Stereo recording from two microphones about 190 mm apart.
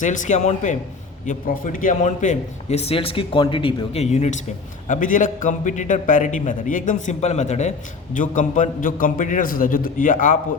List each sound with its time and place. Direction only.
0.0 s a man's voice: 40° left (ahead or behind)